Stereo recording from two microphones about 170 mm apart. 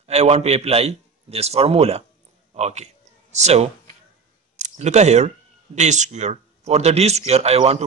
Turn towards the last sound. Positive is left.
turn(degrees=-40)  # may be behind; listen again after turning